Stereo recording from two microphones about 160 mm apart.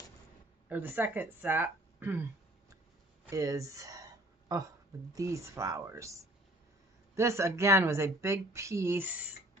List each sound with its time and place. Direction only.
0.7 s speech: 10° right (ahead or behind)
3.3 s a sound: 20° right (ahead or behind)
5.1 s speech: 20° right (ahead or behind)